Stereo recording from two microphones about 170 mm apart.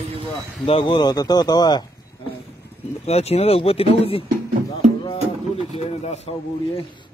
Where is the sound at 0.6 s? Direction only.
30° left (ahead or behind).